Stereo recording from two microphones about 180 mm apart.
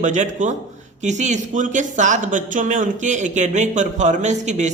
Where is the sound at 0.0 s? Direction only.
45° right (ahead or behind).